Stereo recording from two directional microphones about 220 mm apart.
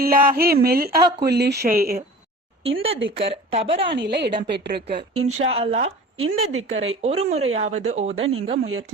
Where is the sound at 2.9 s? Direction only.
55° right (ahead or behind).